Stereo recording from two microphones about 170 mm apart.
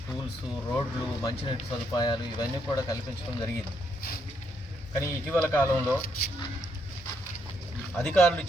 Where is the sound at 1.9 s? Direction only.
25° left (ahead or behind).